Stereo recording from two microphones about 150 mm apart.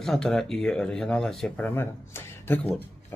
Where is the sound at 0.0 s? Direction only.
5° left (ahead or behind).